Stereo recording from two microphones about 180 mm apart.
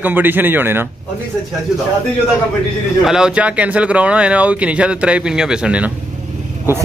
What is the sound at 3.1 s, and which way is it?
Speech, 5° right (ahead or behind).